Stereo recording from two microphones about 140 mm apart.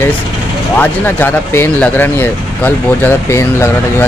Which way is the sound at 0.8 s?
15° left (ahead or behind).